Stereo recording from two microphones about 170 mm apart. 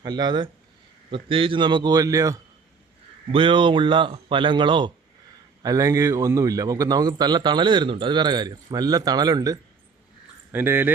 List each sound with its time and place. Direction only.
0.0 s a man's voice: 25° right (ahead or behind)
10.5 s speech: 10° right (ahead or behind)